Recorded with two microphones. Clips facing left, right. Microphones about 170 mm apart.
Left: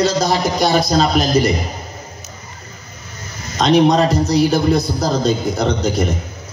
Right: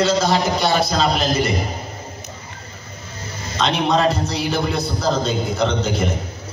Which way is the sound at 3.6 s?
40° left (ahead or behind).